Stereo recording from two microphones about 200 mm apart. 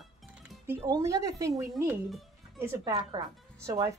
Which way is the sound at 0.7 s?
15° right (ahead or behind).